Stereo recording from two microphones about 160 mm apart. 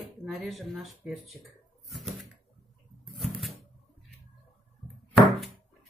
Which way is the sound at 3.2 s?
Centre (ahead or behind).